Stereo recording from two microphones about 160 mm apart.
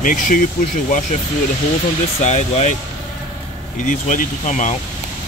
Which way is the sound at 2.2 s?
45° left (ahead or behind).